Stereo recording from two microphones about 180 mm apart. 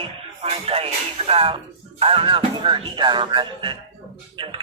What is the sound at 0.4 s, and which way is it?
Music, 30° right (ahead or behind).